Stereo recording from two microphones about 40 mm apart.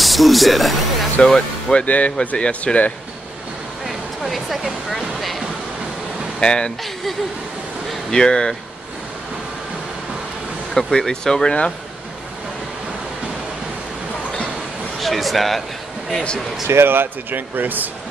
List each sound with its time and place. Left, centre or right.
0.0 s speech: centre
1.2 s speech: left
1.9 s speech: left
2.1 s speech: left
3.8 s a sound: centre
6.4 s speech: left
8.1 s speech: centre
10.7 s speech: centre
15.0 s speech: centre
16.6 s speech: right